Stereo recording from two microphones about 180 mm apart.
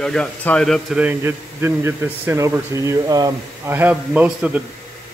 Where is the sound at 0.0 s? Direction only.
5° left (ahead or behind).